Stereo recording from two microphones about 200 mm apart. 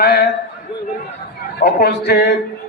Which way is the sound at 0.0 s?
55° left (ahead or behind).